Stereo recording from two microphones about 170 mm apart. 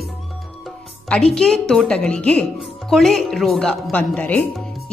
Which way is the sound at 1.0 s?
5° left (ahead or behind).